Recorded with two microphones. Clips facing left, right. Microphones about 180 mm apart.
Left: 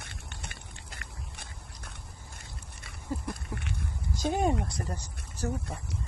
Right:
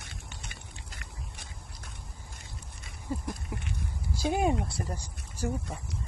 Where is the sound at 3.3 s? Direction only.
65° left (ahead or behind).